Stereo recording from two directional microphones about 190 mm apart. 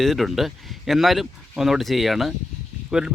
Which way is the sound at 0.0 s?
Centre (ahead or behind).